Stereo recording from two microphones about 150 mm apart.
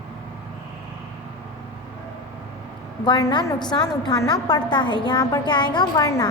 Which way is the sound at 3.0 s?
30° left (ahead or behind).